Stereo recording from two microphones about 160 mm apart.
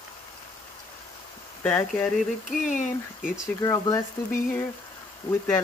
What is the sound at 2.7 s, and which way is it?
Speech, 55° left (ahead or behind).